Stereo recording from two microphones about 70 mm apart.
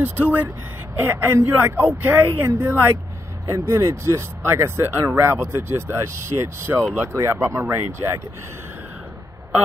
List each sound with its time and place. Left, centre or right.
0.0 s speech: right